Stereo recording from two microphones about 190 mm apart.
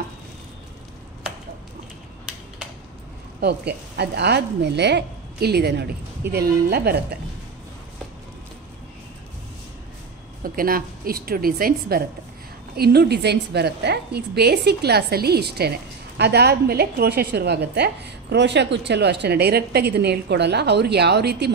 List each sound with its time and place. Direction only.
3.3 s a woman's voice: 60° right (ahead or behind)
10.4 s a woman's voice: 50° right (ahead or behind)